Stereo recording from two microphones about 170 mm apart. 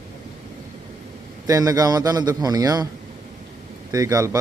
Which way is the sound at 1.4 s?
20° right (ahead or behind).